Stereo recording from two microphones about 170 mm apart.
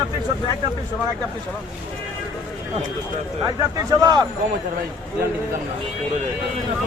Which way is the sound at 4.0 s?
25° right (ahead or behind).